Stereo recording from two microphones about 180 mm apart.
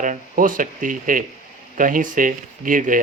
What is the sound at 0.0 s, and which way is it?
Speech, 45° right (ahead or behind).